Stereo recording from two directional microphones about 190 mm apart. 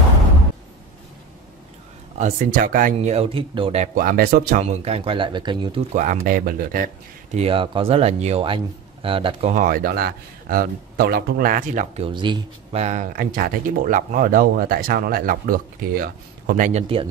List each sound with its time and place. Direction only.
2.1 s speech: 45° right (ahead or behind)
3.9 s speech: 50° right (ahead or behind)
4.6 s speech: 35° right (ahead or behind)
5.9 s speech: 45° right (ahead or behind)
7.3 s speech: 30° right (ahead or behind)